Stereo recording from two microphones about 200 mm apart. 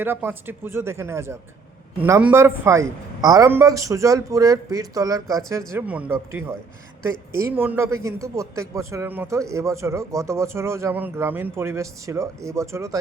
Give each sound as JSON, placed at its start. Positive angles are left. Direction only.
{"t": 0.0, "sound": "speech", "side_deg": -10}
{"t": 5.7, "sound": "speech", "side_deg": -5}
{"t": 7.3, "sound": "speech", "side_deg": -10}